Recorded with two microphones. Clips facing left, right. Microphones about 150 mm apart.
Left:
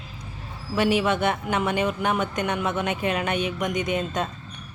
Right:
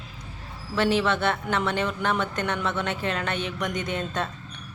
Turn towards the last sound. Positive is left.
turn(degrees=15)  # may be behind; listen again after turning